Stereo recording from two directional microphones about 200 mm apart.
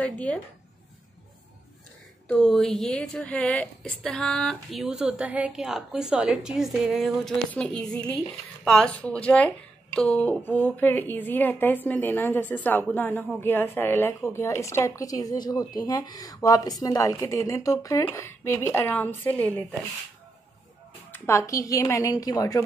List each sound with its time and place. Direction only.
0.0 s speech: 5° left (ahead or behind)
2.3 s a woman's voice: centre (ahead or behind)
21.1 s speech: 15° left (ahead or behind)